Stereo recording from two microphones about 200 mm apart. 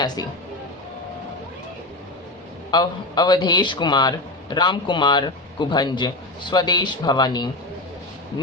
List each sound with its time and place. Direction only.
0.2 s a man's voice: 20° left (ahead or behind)
2.6 s a man's voice: 20° left (ahead or behind)